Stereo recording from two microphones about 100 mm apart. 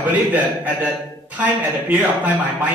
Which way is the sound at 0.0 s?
15° right (ahead or behind).